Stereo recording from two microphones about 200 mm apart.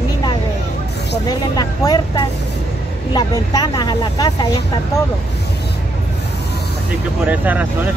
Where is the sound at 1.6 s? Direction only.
20° left (ahead or behind).